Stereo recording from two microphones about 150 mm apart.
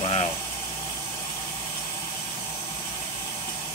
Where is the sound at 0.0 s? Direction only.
45° left (ahead or behind).